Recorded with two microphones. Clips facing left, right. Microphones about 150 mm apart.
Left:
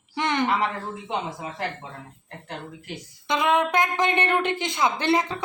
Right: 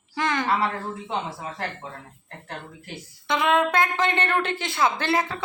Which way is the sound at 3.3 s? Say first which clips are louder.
Even; 20° left (ahead or behind).